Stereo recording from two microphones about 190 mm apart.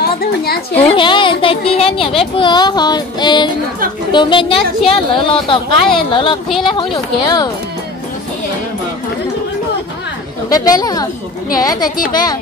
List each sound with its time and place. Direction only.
0.7 s child singing: 30° left (ahead or behind)
10.5 s child singing: 20° left (ahead or behind)